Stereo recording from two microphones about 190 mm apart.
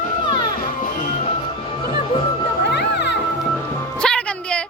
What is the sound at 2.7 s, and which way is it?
Music, 60° left (ahead or behind).